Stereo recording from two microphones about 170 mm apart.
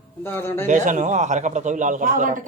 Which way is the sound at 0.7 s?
45° right (ahead or behind).